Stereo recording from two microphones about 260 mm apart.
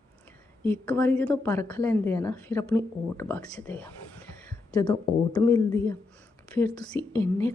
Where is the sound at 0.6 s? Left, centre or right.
Centre.